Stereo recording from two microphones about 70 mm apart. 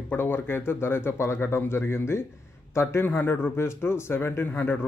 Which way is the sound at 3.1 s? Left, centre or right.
Left.